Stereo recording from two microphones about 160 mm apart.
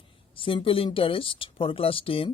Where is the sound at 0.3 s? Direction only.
35° left (ahead or behind).